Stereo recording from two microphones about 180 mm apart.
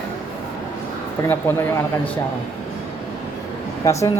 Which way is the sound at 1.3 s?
10° left (ahead or behind).